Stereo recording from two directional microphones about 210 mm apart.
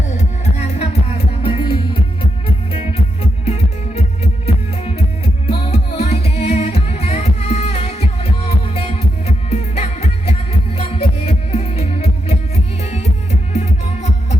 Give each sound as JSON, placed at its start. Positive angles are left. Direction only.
{"t": 0.2, "sound": "music", "side_deg": 30}
{"t": 3.9, "sound": "music", "side_deg": 30}
{"t": 13.5, "sound": "music", "side_deg": 30}